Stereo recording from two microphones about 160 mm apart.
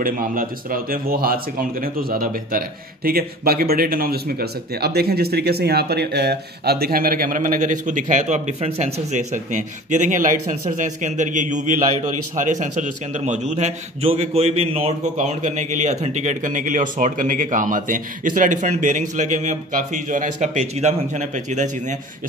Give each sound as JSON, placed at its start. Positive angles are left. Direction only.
{"t": 0.0, "sound": "speech", "side_deg": -60}